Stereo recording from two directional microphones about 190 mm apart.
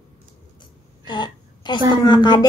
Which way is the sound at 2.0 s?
20° left (ahead or behind).